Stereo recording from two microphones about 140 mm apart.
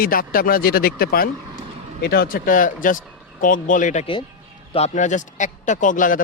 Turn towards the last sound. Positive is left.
turn(degrees=70)  # may be behind; listen again after turning